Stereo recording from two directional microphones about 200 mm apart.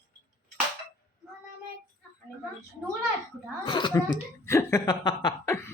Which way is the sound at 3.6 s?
25° left (ahead or behind).